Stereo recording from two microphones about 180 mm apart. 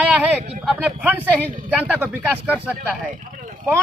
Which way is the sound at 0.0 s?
10° right (ahead or behind).